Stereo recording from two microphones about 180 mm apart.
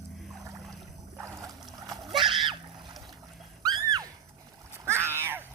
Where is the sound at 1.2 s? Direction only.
15° right (ahead or behind).